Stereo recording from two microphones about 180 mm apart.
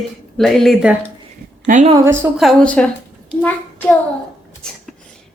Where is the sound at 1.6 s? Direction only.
45° right (ahead or behind).